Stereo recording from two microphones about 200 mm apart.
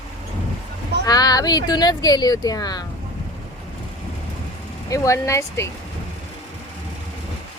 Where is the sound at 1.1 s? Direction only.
20° left (ahead or behind).